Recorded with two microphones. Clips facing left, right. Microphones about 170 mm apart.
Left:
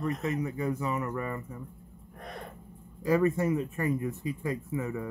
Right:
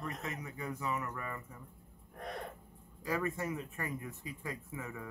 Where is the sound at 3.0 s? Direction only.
30° left (ahead or behind).